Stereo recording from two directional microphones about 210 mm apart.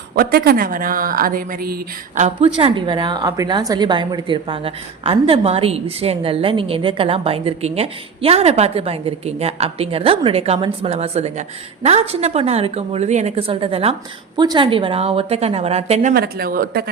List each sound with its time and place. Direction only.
0.1 s speech: 45° right (ahead or behind)
2.6 s a woman's voice: 25° right (ahead or behind)
16.1 s speech: 45° right (ahead or behind)